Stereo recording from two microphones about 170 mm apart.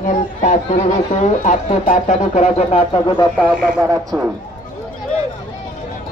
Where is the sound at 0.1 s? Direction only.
45° left (ahead or behind).